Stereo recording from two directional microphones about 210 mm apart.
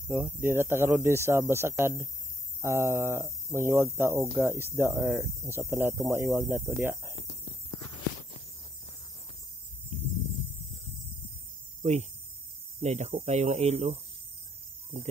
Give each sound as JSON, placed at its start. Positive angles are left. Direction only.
{"t": 0.1, "sound": "speech", "side_deg": -10}
{"t": 11.8, "sound": "speech", "side_deg": -30}